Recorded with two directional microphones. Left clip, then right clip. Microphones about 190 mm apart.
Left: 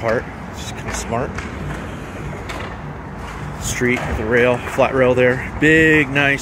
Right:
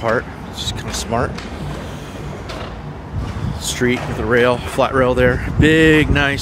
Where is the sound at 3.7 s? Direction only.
20° right (ahead or behind).